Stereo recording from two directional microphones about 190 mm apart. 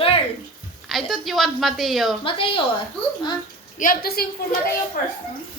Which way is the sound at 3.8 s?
50° left (ahead or behind).